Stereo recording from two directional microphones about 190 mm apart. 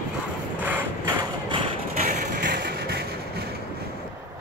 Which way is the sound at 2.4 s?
60° right (ahead or behind).